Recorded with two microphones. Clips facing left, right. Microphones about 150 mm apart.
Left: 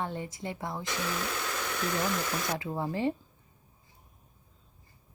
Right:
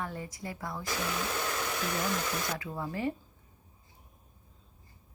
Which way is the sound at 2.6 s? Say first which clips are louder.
Left 4 dB; 30° left (ahead or behind).